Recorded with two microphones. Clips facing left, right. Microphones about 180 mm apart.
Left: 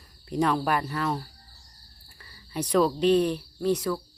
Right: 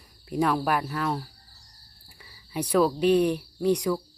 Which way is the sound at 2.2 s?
10° right (ahead or behind).